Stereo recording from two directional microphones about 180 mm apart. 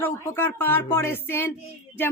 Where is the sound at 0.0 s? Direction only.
10° left (ahead or behind).